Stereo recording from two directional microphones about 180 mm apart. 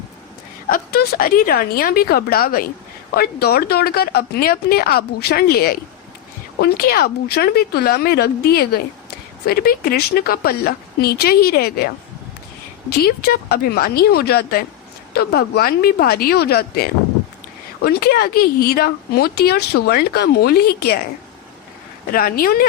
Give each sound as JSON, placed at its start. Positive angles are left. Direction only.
{"t": 0.7, "sound": "speech", "side_deg": 60}
{"t": 13.0, "sound": "speech", "side_deg": 60}
{"t": 22.1, "sound": "speech", "side_deg": 55}